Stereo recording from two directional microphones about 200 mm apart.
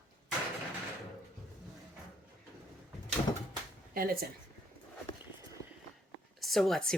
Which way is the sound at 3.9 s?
45° right (ahead or behind).